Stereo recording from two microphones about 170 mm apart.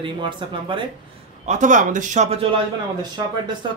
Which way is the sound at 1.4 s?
45° right (ahead or behind).